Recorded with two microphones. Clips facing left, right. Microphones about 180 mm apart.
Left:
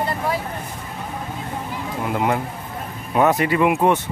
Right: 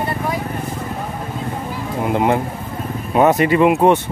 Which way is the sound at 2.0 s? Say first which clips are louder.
Right 5 dB; 25° right (ahead or behind).